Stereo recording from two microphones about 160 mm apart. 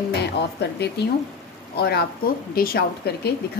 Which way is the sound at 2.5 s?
70° left (ahead or behind).